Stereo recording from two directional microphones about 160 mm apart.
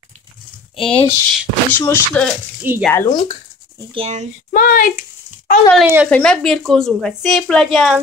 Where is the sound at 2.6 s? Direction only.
15° right (ahead or behind).